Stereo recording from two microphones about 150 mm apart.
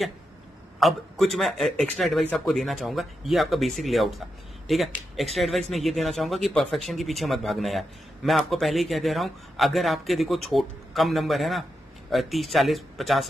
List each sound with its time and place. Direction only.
0.7 s speech: centre (ahead or behind)